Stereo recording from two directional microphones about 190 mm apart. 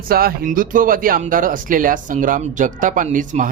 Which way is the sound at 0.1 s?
50° right (ahead or behind).